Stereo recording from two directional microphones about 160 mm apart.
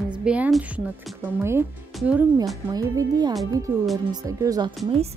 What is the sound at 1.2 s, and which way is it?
Speech, 15° right (ahead or behind).